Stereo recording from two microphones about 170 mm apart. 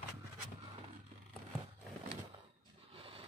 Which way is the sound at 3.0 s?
35° right (ahead or behind).